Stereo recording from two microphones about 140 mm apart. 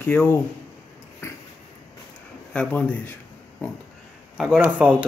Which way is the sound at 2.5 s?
5° left (ahead or behind).